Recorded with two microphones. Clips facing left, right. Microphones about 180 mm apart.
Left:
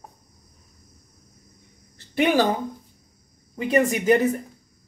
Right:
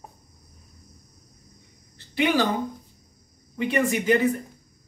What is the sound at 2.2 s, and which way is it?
Speech, 50° left (ahead or behind).